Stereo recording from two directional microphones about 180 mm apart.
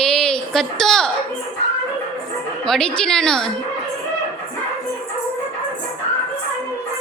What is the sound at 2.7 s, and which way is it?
Speech, 5° left (ahead or behind).